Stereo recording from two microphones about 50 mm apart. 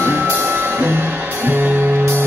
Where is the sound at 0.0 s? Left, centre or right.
Right.